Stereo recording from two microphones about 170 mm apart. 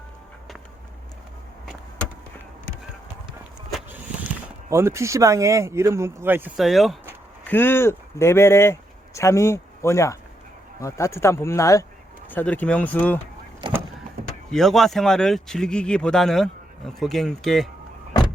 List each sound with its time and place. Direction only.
4.7 s speech: 15° right (ahead or behind)
6.6 s speech: centre (ahead or behind)
7.4 s speech: 10° left (ahead or behind)
13.6 s a sound: 25° right (ahead or behind)
14.5 s speech: centre (ahead or behind)